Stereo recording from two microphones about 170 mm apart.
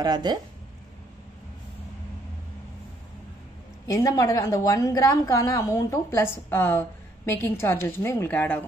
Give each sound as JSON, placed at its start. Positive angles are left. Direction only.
{"t": 0.0, "sound": "speech", "side_deg": -25}
{"t": 3.8, "sound": "a woman's voice", "side_deg": 20}